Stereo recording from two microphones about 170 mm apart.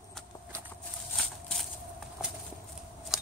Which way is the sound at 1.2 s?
Centre (ahead or behind).